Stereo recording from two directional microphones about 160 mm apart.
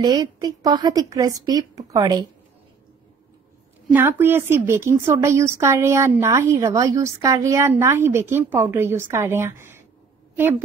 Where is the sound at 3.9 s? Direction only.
15° right (ahead or behind).